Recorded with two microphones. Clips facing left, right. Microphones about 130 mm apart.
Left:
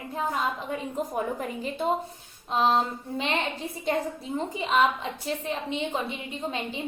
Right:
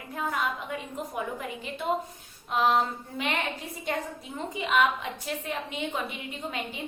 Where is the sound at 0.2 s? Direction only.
30° left (ahead or behind).